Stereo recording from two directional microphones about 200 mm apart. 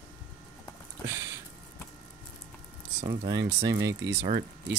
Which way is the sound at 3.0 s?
20° right (ahead or behind).